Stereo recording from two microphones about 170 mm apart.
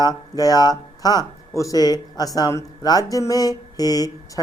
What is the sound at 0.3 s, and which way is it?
Speech, 20° left (ahead or behind).